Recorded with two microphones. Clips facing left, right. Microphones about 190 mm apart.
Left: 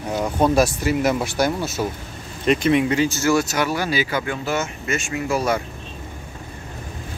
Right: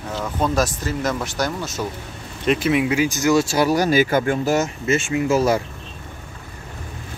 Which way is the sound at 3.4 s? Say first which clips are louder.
Right 5 dB; 35° right (ahead or behind).